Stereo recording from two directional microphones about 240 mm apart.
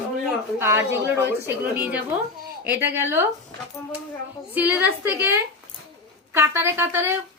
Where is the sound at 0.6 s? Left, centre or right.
Centre.